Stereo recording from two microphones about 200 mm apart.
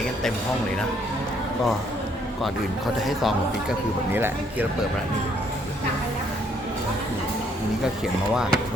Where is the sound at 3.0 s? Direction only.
Centre (ahead or behind).